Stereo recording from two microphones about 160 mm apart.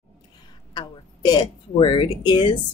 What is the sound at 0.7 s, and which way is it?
Speech, 25° left (ahead or behind).